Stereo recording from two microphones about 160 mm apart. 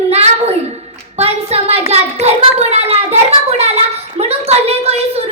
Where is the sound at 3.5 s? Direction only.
40° right (ahead or behind).